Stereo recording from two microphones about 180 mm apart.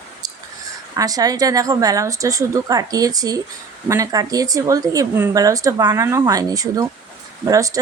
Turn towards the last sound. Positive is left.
turn(degrees=-20)  # may be behind; listen again after turning